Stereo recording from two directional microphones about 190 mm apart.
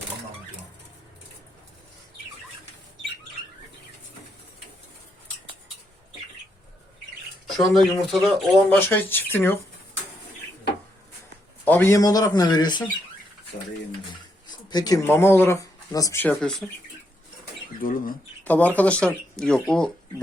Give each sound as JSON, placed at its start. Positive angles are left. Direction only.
{"t": 7.5, "sound": "speech", "side_deg": 0}
{"t": 11.6, "sound": "a man's voice", "side_deg": 10}
{"t": 14.4, "sound": "speech", "side_deg": 20}
{"t": 16.3, "sound": "speech", "side_deg": 0}
{"t": 17.7, "sound": "speech", "side_deg": 45}
{"t": 18.4, "sound": "speech", "side_deg": 10}